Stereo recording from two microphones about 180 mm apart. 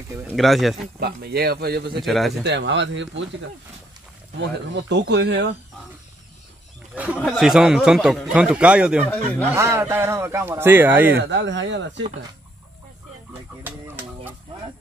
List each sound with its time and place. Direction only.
0.4 s a man's voice: centre (ahead or behind)
0.9 s a man's voice: 60° right (ahead or behind)
2.0 s a man's voice: centre (ahead or behind)
2.4 s speech: 80° right
4.4 s speech: 75° right (ahead or behind)
7.2 s a man's voice: centre (ahead or behind)
11.2 s speech: 90° right
13.3 s a sound: 10° right (ahead or behind)